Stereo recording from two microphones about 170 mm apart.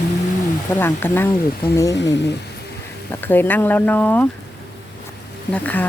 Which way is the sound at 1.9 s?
90° left.